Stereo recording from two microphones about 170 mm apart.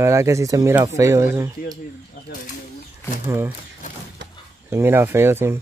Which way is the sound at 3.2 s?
15° right (ahead or behind).